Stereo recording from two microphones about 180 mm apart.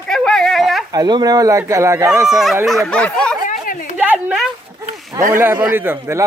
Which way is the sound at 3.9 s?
10° right (ahead or behind).